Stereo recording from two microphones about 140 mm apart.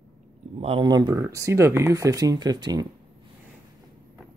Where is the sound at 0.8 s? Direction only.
30° right (ahead or behind).